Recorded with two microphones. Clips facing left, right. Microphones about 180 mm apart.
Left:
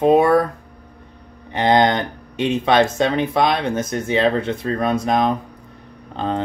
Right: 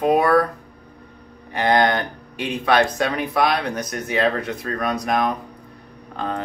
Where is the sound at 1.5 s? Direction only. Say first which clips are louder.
Left 2 dB; 20° left (ahead or behind).